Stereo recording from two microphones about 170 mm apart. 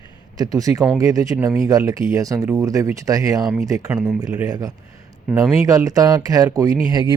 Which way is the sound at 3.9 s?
5° right (ahead or behind).